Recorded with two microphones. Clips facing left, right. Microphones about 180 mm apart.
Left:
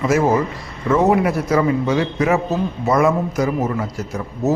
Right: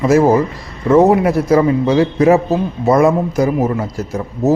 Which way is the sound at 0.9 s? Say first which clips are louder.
Right 5 dB; 30° right (ahead or behind).